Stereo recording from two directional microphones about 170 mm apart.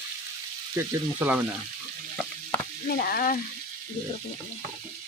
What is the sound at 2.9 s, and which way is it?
Frying, 60° left (ahead or behind).